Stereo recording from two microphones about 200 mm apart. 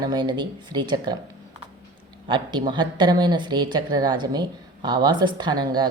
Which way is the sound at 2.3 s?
20° right (ahead or behind).